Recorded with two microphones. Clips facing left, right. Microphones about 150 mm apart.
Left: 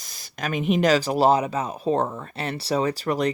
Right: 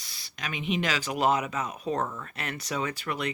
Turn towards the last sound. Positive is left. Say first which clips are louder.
# left 8 dB
turn(degrees=35)  # may be behind; listen again after turning